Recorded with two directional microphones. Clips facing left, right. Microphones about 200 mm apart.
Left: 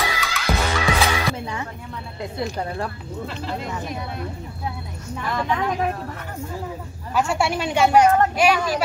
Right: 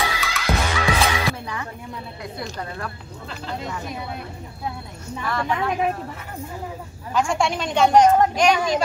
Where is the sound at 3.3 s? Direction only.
Centre (ahead or behind).